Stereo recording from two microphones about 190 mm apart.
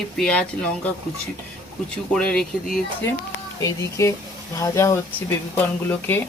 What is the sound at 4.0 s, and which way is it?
Speech, 15° left (ahead or behind).